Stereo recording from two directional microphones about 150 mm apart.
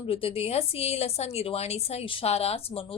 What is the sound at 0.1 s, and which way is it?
A woman's voice, 40° left (ahead or behind).